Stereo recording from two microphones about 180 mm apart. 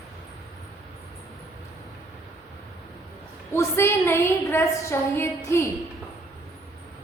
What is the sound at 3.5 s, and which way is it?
A woman's voice, 15° left (ahead or behind).